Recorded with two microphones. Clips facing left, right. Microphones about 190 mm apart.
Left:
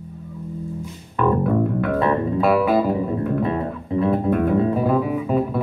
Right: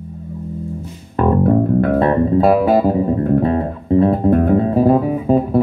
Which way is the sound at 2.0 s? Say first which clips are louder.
Right 4 dB; 40° right (ahead or behind).